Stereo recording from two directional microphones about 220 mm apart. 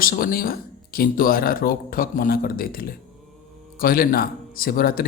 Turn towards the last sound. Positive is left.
turn(degrees=40)  # may be behind; listen again after turning